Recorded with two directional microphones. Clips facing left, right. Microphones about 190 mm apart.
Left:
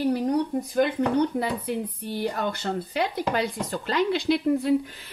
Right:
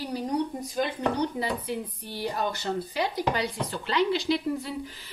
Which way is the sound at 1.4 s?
55° left (ahead or behind).